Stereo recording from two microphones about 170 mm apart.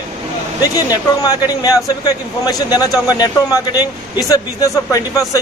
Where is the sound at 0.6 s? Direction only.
20° left (ahead or behind).